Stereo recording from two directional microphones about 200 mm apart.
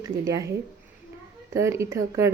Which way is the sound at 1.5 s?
15° right (ahead or behind).